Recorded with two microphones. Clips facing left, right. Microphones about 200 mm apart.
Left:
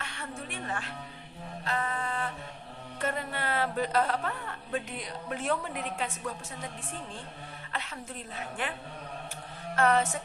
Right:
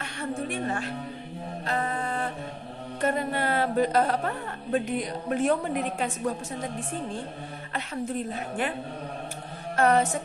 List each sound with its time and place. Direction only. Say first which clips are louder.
0.0 s music: right 8 dB; 40° right (ahead or behind)
1.6 s mantra: right 3 dB; 35° right (ahead or behind)
3.0 s a woman's voice: right 7 dB; 45° right (ahead or behind)
8.3 s a woman's voice: right 6 dB; 45° right (ahead or behind)
9.7 s a woman's voice: right 4 dB; 40° right (ahead or behind)